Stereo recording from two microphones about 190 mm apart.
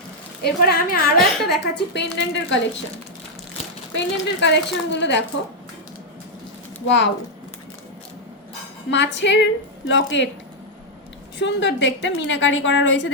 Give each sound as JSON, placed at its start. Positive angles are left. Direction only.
{"t": 0.4, "sound": "a woman's voice", "side_deg": 55}
{"t": 3.9, "sound": "a woman's voice", "side_deg": 65}
{"t": 6.8, "sound": "a woman's voice", "side_deg": 70}
{"t": 8.9, "sound": "a woman's voice", "side_deg": 70}
{"t": 11.3, "sound": "a woman's voice", "side_deg": 65}